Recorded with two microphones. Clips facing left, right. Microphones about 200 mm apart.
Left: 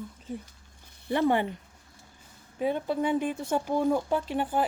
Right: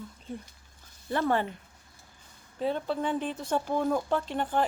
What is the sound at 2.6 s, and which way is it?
Speech, 10° left (ahead or behind).